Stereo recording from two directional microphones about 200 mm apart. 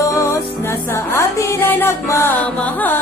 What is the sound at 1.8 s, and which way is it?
Music, 10° left (ahead or behind).